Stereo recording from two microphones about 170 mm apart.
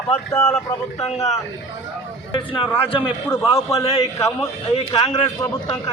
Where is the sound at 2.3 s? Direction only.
25° left (ahead or behind).